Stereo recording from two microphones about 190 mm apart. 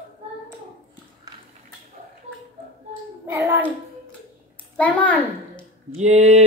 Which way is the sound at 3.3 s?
15° right (ahead or behind).